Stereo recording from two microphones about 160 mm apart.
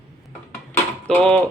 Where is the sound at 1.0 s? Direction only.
5° left (ahead or behind).